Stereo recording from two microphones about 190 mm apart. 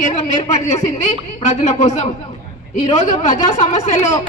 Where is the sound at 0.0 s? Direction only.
35° left (ahead or behind).